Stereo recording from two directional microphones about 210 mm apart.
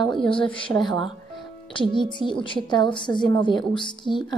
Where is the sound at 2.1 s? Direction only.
20° left (ahead or behind).